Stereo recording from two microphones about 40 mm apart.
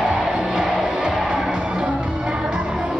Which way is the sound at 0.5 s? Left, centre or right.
Centre.